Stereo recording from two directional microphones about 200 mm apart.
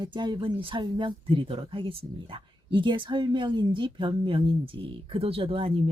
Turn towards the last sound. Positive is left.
turn(degrees=-30)  # may be behind; listen again after turning